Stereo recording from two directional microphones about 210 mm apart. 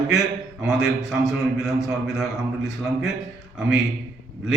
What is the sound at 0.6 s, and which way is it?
Speech, 5° right (ahead or behind).